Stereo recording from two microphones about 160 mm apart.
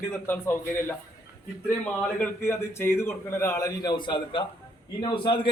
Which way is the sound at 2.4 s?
15° left (ahead or behind).